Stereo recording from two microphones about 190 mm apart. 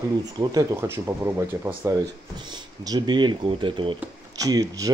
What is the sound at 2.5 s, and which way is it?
Speech, 20° right (ahead or behind).